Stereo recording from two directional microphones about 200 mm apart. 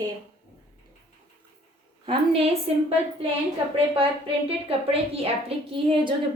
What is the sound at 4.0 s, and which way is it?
A woman's voice, 30° right (ahead or behind).